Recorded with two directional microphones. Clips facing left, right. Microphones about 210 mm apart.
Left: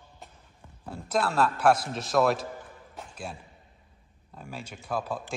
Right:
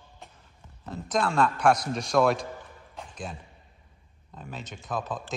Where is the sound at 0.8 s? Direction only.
10° left (ahead or behind).